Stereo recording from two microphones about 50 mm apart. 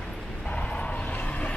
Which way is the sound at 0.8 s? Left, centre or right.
Left.